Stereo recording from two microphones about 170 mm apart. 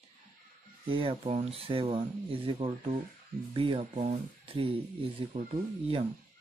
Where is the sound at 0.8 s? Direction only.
30° right (ahead or behind).